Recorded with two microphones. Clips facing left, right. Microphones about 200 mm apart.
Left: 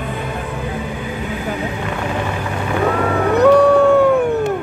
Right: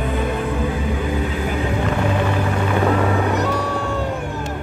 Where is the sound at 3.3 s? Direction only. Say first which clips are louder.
Left 12 dB; 60° left (ahead or behind).